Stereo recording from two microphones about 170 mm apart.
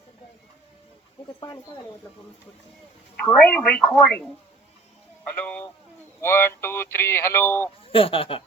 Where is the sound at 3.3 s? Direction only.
5° left (ahead or behind).